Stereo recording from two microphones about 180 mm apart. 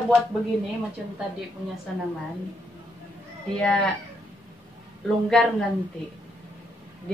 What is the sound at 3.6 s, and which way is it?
Speech, 5° left (ahead or behind).